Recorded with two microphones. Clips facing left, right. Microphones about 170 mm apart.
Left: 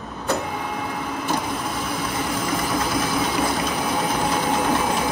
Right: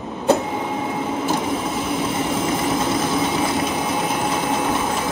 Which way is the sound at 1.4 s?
25° right (ahead or behind).